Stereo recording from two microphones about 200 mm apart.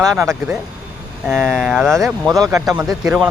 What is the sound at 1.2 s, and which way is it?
Speech, centre (ahead or behind).